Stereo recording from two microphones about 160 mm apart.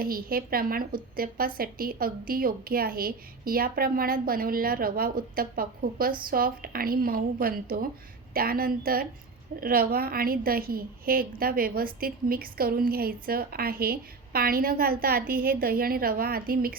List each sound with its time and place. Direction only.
0.0 s a woman's voice: 65° right (ahead or behind)